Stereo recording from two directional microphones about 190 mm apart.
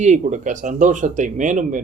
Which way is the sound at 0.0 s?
40° right (ahead or behind).